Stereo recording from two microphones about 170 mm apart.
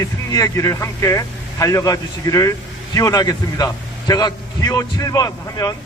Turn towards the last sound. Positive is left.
turn(degrees=20)  # may be behind; listen again after turning